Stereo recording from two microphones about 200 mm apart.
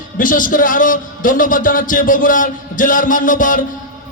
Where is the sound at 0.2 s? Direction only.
45° left (ahead or behind).